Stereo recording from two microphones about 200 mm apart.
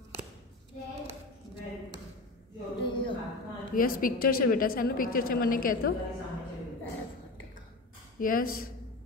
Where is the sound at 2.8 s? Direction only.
25° left (ahead or behind).